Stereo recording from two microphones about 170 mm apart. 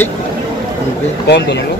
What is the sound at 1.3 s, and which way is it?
Speech, 85° left.